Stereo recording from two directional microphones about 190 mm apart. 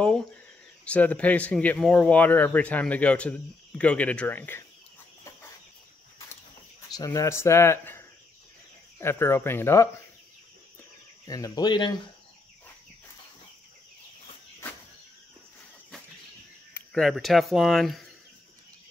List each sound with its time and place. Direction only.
0.0 s a sound: 5° left (ahead or behind)
0.8 s speech: 5° left (ahead or behind)
6.9 s speech: 20° left (ahead or behind)
9.0 s speech: 10° left (ahead or behind)
11.2 s speech: 20° left (ahead or behind)
16.7 s speech: 5° left (ahead or behind)